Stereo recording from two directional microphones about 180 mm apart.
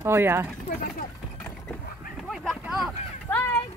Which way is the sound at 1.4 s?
5° left (ahead or behind).